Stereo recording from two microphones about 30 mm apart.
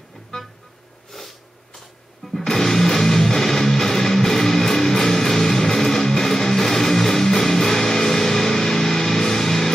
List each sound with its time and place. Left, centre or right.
0.3 s music: centre
2.4 s music: centre